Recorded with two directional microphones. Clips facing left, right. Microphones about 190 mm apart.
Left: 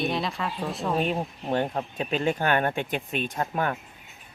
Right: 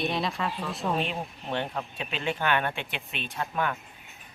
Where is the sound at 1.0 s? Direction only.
40° left (ahead or behind).